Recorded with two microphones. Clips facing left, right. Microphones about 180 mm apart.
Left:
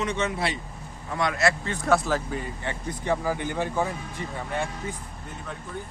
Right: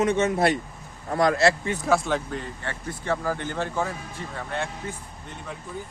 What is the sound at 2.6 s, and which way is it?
Speech, 15° left (ahead or behind).